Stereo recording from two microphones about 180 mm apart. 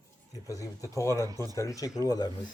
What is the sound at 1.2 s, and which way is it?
Speech, 20° right (ahead or behind).